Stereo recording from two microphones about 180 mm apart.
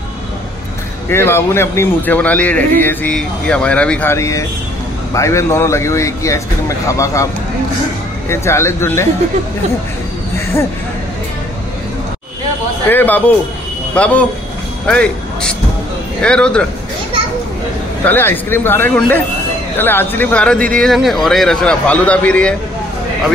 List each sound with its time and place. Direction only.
1.0 s speech: 15° left (ahead or behind)
8.3 s speech: 15° left (ahead or behind)
12.8 s a man's voice: 10° left (ahead or behind)
18.0 s speech: 10° left (ahead or behind)